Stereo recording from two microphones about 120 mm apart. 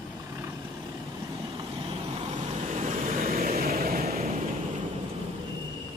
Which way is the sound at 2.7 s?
80° right.